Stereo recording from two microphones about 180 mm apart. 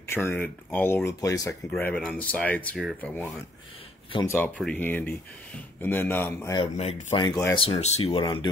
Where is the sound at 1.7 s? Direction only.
5° left (ahead or behind).